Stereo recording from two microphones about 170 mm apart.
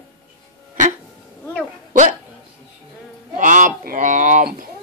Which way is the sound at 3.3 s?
50° right (ahead or behind).